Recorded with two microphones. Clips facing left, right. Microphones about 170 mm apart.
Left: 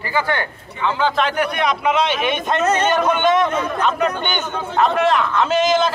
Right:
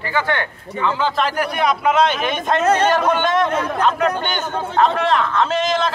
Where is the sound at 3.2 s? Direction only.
Centre (ahead or behind).